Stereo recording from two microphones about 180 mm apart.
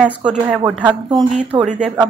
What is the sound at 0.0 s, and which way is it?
Speech, 5° right (ahead or behind).